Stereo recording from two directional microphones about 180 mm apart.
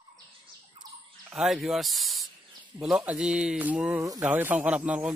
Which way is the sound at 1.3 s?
Centre (ahead or behind).